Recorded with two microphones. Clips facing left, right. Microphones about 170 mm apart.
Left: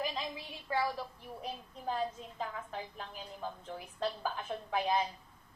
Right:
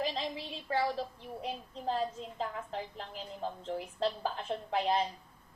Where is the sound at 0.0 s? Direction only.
30° right (ahead or behind).